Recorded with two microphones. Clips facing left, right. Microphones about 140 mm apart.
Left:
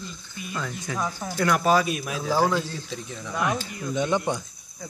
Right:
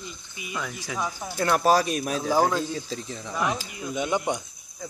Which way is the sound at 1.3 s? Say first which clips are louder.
Even; 30° right (ahead or behind).